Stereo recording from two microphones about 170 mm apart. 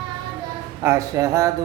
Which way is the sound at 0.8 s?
15° right (ahead or behind).